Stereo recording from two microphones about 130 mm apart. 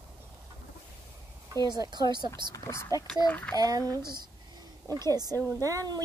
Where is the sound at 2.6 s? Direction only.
20° left (ahead or behind).